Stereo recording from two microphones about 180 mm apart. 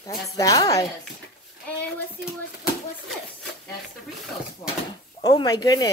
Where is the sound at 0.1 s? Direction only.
20° left (ahead or behind).